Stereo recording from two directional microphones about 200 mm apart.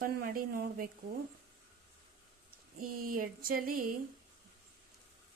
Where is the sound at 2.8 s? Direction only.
45° right (ahead or behind).